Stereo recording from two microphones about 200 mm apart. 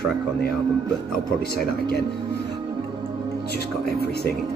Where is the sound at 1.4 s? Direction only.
50° left (ahead or behind).